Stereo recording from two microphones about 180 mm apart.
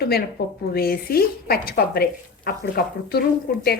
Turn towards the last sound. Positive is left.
turn(degrees=55)  # may be behind; listen again after turning